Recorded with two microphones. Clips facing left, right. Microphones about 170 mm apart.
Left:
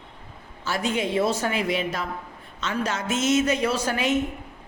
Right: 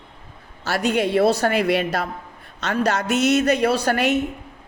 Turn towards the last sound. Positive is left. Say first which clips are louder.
# right 5 dB
turn(degrees=-65)  # may be behind; listen again after turning